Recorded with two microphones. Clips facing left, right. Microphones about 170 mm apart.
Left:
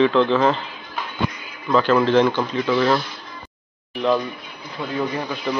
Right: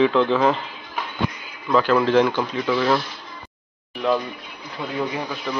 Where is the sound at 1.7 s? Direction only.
5° right (ahead or behind).